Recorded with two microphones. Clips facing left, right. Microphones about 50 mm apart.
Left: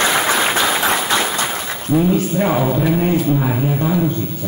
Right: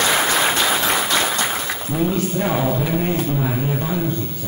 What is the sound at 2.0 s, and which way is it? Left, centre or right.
Speech, centre.